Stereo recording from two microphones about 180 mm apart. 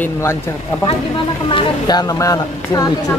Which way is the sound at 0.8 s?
30° left (ahead or behind).